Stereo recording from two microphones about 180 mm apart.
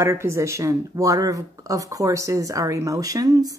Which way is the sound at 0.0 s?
15° right (ahead or behind).